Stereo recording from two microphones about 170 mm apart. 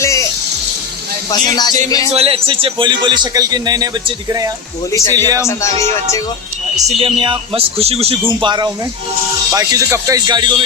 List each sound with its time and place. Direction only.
0.0 s music: 20° left (ahead or behind)
1.3 s speech: 25° left (ahead or behind)
2.1 s a man's voice: 35° right (ahead or behind)
4.9 s speech: 15° left (ahead or behind)
6.7 s a man's voice: 35° right (ahead or behind)